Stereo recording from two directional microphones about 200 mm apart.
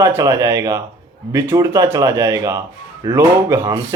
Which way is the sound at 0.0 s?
15° right (ahead or behind).